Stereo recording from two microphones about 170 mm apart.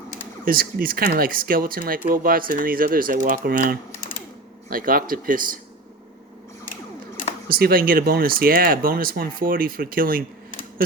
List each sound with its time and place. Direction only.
0.4 s speech: 60° right (ahead or behind)
7.4 s speech: 60° right (ahead or behind)